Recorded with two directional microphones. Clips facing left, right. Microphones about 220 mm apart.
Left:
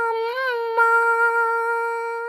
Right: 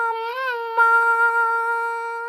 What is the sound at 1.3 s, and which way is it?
Music, 10° left (ahead or behind).